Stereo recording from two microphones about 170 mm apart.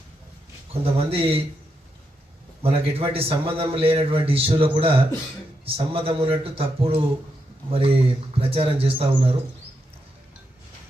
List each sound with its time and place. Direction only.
0.7 s a man's voice: 35° right (ahead or behind)
2.6 s a man's voice: 35° right (ahead or behind)